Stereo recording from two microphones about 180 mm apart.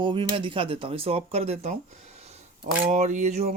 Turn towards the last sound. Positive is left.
turn(degrees=-40)  # may be behind; listen again after turning